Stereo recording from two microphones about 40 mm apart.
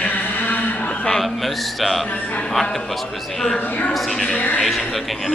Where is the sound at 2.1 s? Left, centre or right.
Left.